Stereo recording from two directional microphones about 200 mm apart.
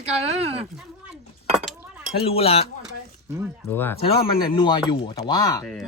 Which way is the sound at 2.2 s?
30° left (ahead or behind).